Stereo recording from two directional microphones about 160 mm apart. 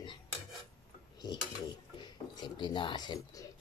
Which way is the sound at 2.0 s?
25° left (ahead or behind).